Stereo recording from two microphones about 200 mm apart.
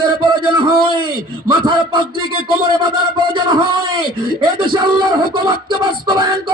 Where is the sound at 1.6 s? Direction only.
25° right (ahead or behind).